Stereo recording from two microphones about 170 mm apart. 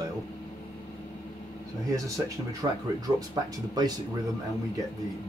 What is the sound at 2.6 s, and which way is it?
Speech, 20° right (ahead or behind).